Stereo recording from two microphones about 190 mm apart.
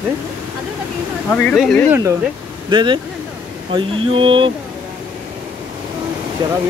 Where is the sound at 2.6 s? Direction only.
25° right (ahead or behind).